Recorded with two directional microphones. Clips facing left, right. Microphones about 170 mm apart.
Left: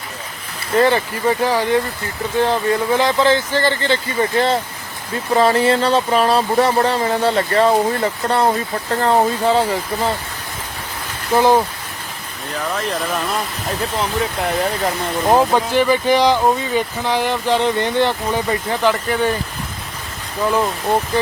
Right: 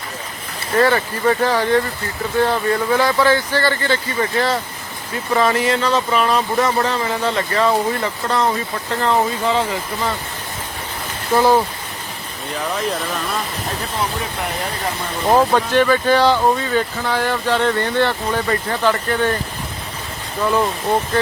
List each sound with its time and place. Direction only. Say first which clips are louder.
0.8 s speech: left 1 dB; 20° left (ahead or behind)
4.2 s speech: left 4 dB; 30° left (ahead or behind)
11.3 s speech: left 1 dB; 15° left (ahead or behind)
15.3 s speech: even; 15° left (ahead or behind)
20.4 s speech: even; 5° left (ahead or behind)